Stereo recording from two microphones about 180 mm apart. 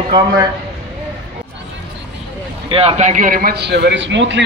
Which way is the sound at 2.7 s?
35° right (ahead or behind).